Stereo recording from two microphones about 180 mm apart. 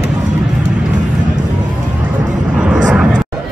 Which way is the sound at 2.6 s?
5° right (ahead or behind).